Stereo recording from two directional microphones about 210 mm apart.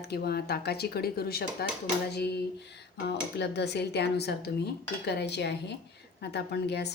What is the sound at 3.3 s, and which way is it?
A woman's voice, 50° left (ahead or behind).